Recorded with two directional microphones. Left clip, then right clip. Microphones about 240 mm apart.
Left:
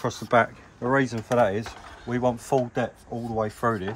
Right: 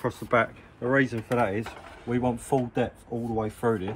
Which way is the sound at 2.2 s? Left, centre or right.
Left.